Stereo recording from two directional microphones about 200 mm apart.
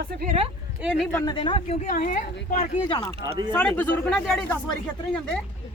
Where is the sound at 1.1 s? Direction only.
20° left (ahead or behind); by 2.8 s 40° left (ahead or behind).